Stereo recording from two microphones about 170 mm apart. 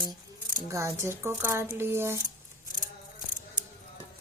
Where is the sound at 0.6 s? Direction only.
20° right (ahead or behind).